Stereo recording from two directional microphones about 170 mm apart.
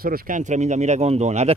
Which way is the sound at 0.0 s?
60° right (ahead or behind).